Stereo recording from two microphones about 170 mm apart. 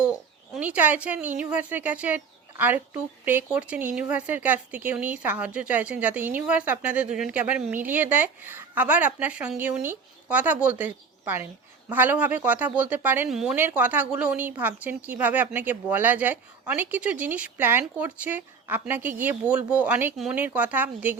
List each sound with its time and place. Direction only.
0.0 s speech: 5° right (ahead or behind)